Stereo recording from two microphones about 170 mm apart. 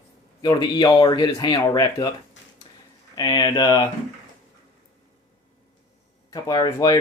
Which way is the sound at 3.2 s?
25° left (ahead or behind).